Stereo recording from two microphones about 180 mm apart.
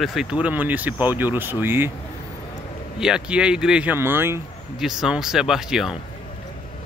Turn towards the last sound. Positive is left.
turn(degrees=0)  # may be behind; listen again after turning